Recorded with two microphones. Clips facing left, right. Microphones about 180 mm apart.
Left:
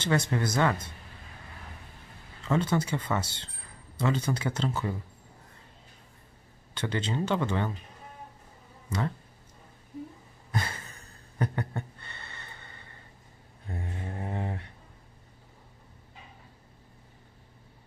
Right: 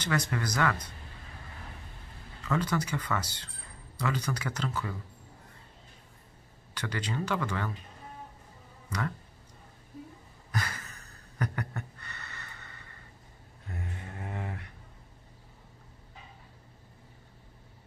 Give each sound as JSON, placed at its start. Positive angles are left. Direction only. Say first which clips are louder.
{"t": 0.0, "sound": "speech", "louder": "left 4 dB", "side_deg": 25}
{"t": 2.4, "sound": "speech", "louder": "left 3 dB", "side_deg": 25}
{"t": 6.7, "sound": "speech", "louder": "left 4 dB", "side_deg": 25}
{"t": 8.8, "sound": "speech", "louder": "left 3 dB", "side_deg": 25}
{"t": 10.5, "sound": "gasp", "louder": "left 2 dB", "side_deg": 25}
{"t": 13.7, "sound": "mantra", "louder": "left 4 dB", "side_deg": 30}